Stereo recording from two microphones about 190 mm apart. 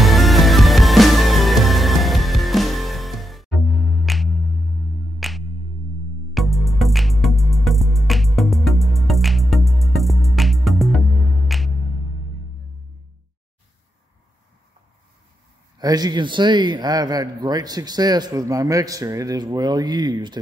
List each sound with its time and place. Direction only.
0.0 s music: centre (ahead or behind)
15.8 s a man's voice: 20° right (ahead or behind)